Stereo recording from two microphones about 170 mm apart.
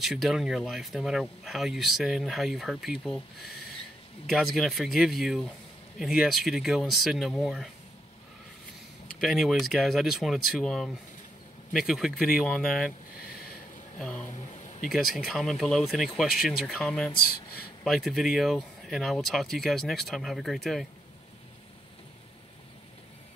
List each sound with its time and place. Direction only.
0.0 s speech: centre (ahead or behind)
9.2 s speech: centre (ahead or behind)
13.9 s speech: 5° left (ahead or behind)
17.2 s speech: 60° left (ahead or behind)
17.8 s speech: centre (ahead or behind)